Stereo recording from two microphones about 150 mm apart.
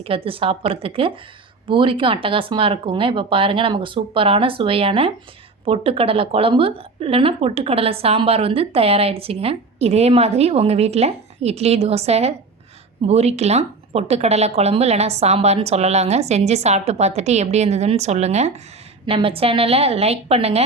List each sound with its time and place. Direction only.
0.0 s a woman's voice: 40° right (ahead or behind)